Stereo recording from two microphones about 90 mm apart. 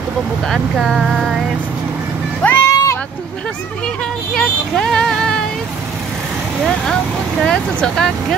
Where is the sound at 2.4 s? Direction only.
25° left (ahead or behind).